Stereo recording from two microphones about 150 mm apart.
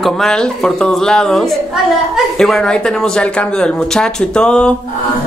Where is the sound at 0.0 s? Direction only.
5° left (ahead or behind).